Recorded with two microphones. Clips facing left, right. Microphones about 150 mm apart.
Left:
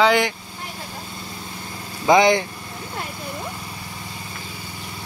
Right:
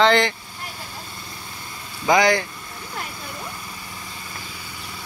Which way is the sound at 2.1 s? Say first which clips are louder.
Left 3 dB; 20° left (ahead or behind).